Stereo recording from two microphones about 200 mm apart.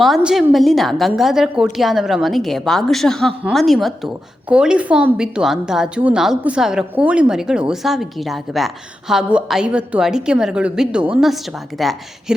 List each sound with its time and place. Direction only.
0.0 s a woman's voice: centre (ahead or behind)